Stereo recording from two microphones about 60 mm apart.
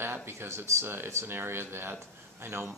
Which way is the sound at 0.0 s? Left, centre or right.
Right.